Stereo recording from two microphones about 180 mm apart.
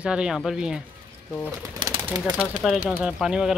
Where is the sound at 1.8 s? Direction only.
20° right (ahead or behind).